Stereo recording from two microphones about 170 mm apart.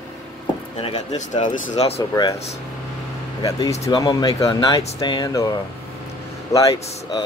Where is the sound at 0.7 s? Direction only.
35° left (ahead or behind).